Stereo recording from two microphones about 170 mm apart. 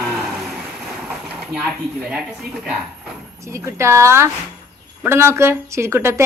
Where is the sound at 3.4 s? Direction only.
15° right (ahead or behind).